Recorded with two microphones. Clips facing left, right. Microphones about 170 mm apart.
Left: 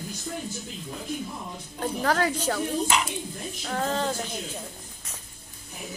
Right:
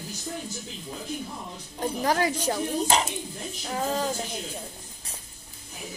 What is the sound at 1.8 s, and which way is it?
Speech, 15° right (ahead or behind).